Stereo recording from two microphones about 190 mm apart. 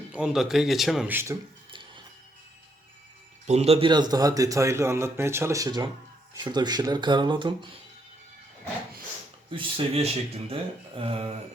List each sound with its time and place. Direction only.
0.1 s speech: 5° right (ahead or behind)
1.7 s music: 25° right (ahead or behind)
3.4 s a man's voice: 35° right (ahead or behind)
9.5 s a man's voice: 25° right (ahead or behind)